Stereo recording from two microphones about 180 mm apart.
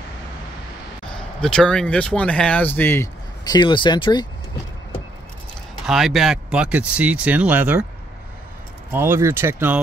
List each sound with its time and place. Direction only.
1.1 s speech: 5° left (ahead or behind); by 4.3 s 25° left (ahead or behind)
5.9 s speech: centre (ahead or behind)
8.9 s speech: 15° right (ahead or behind)